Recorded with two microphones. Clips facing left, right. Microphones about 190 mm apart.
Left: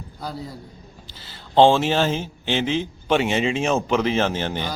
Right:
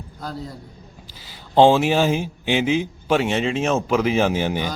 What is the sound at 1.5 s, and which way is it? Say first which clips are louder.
A man's voice: right 1 dB; 10° right (ahead or behind).